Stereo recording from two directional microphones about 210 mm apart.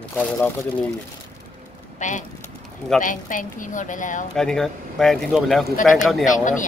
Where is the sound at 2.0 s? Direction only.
35° left (ahead or behind).